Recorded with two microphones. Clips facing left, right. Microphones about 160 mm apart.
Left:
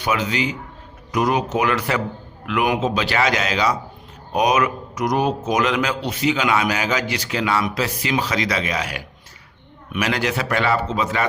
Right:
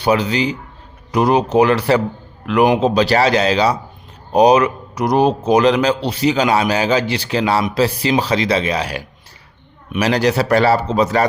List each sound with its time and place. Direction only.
0.0 s speech: 35° right (ahead or behind)